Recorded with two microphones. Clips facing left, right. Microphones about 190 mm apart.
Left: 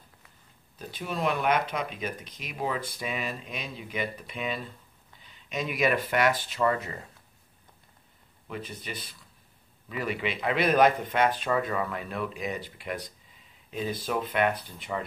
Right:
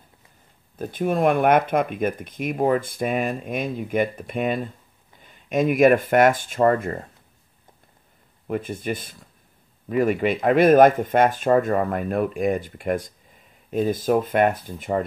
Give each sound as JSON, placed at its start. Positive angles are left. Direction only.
{"t": 0.7, "sound": "speech", "side_deg": -50}
{"t": 8.5, "sound": "speech", "side_deg": -50}